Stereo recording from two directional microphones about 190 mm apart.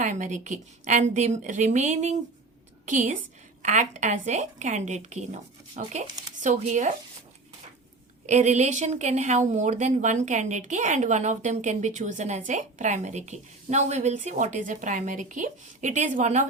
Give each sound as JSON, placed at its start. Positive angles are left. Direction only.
{"t": 0.0, "sound": "a woman's voice", "side_deg": -40}
{"t": 8.3, "sound": "a woman's voice", "side_deg": -40}